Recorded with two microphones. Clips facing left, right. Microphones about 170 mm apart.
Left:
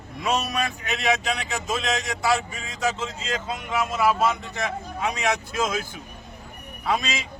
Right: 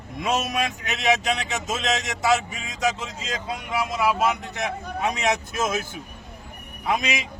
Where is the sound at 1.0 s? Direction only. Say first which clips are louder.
Right 2 dB; 20° right (ahead or behind).